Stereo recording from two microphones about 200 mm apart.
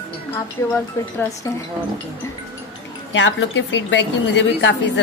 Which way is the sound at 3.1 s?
70° left (ahead or behind).